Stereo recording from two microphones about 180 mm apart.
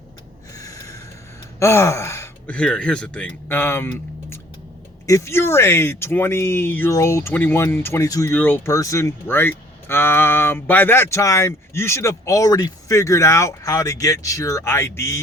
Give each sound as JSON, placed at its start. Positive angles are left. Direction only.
{"t": 0.5, "sound": "snort", "side_deg": 20}
{"t": 1.5, "sound": "speech", "side_deg": 15}